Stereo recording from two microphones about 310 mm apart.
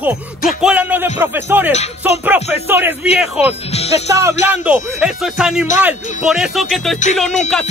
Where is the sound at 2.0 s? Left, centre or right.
Centre.